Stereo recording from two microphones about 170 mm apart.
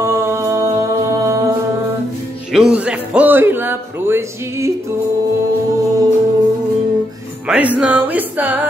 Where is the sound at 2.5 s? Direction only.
5° right (ahead or behind).